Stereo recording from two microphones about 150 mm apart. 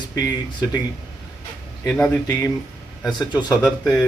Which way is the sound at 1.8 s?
15° left (ahead or behind).